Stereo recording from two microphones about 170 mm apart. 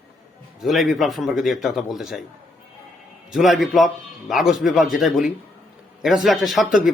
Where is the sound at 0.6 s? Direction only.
Centre (ahead or behind).